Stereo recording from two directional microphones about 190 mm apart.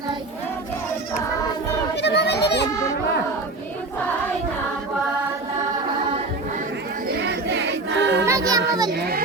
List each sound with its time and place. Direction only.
2.0 s a sound: 65° left (ahead or behind)
7.2 s choir: 70° right (ahead or behind)
8.3 s child singing: 15° right (ahead or behind)
8.9 s children playing: 55° right (ahead or behind)